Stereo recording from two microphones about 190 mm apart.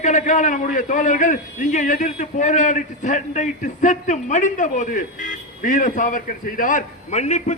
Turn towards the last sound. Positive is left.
turn(degrees=35)  # may be behind; listen again after turning